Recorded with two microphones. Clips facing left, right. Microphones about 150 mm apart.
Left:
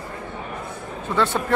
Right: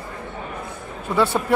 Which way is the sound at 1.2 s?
10° right (ahead or behind).